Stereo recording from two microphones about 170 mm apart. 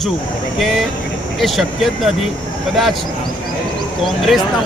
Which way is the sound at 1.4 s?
Centre (ahead or behind).